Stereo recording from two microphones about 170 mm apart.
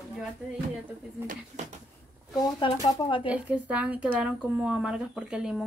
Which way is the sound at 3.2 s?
10° right (ahead or behind).